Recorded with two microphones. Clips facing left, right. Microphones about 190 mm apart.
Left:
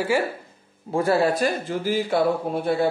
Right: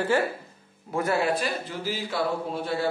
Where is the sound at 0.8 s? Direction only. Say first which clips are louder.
Left 5 dB; 30° left (ahead or behind).